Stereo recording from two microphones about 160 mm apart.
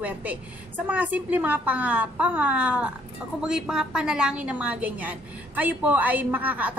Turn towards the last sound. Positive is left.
turn(degrees=-10)  # may be behind; listen again after turning